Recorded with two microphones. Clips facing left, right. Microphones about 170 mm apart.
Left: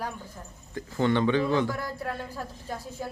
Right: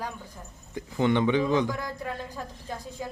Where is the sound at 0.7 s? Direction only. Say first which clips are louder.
Right 1 dB; 15° right (ahead or behind).